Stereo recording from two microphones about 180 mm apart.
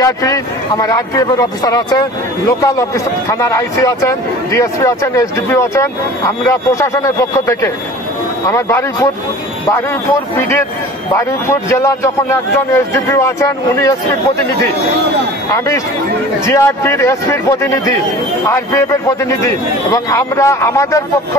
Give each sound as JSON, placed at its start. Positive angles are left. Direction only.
{"t": 0.0, "sound": "a man's voice", "side_deg": 20}
{"t": 11.1, "sound": "a man's voice", "side_deg": 15}
{"t": 15.5, "sound": "a man's voice", "side_deg": 15}